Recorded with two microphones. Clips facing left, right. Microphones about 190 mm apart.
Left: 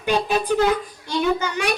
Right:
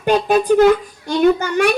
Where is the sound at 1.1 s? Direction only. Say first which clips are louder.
Right 7 dB; 50° right (ahead or behind).